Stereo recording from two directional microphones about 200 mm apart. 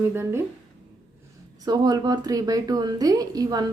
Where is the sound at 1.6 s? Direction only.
20° right (ahead or behind).